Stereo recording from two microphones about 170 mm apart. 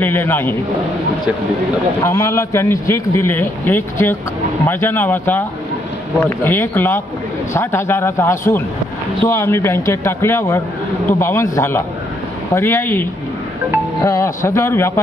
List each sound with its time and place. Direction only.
0.0 s a man's voice: 10° left (ahead or behind)
2.0 s a man's voice: 15° left (ahead or behind)
14.0 s a man's voice: 15° left (ahead or behind)